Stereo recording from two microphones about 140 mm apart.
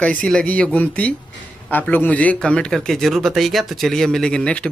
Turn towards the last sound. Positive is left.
turn(degrees=5)  # may be behind; listen again after turning